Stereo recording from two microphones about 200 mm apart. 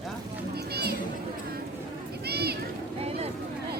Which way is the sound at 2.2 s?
55° right (ahead or behind).